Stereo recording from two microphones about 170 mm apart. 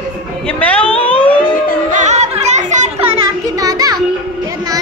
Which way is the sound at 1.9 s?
45° right (ahead or behind).